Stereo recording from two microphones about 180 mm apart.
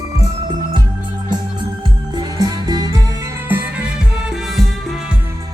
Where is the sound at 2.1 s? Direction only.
20° right (ahead or behind).